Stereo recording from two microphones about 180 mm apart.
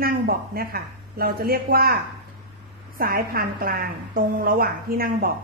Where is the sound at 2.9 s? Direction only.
55° right (ahead or behind).